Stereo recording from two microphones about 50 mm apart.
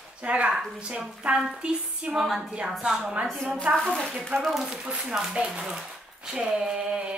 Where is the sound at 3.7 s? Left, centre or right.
Right.